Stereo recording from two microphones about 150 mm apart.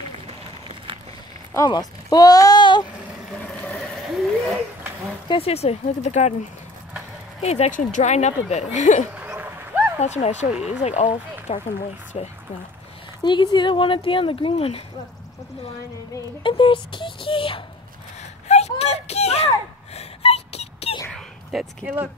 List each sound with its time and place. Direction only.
1.5 s speech: 25° left (ahead or behind)
3.3 s vehicle: 5° left (ahead or behind)
5.3 s speech: 40° left (ahead or behind)
7.4 s speech: 45° left (ahead or behind)
9.1 s a sound: 10° right (ahead or behind)
9.9 s speech: 50° left (ahead or behind)
10.5 s speech: 5° right (ahead or behind)
10.8 s speech: 50° left (ahead or behind)
13.2 s speech: 30° left (ahead or behind)
16.4 s speech: 35° left (ahead or behind)
18.5 s a sound: 45° left (ahead or behind)
21.1 s a sound: 5° right (ahead or behind)